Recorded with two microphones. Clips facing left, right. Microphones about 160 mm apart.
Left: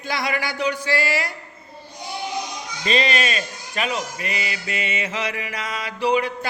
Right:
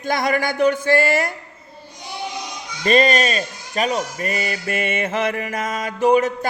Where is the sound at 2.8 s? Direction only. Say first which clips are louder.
Right 6 dB; 50° right (ahead or behind).